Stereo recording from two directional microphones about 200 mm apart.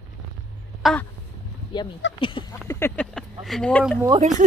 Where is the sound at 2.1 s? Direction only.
25° left (ahead or behind).